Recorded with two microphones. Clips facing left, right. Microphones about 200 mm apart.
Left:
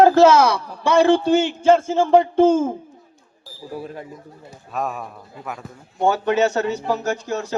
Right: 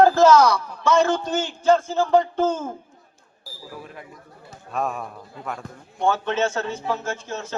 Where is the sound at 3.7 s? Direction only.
30° left (ahead or behind).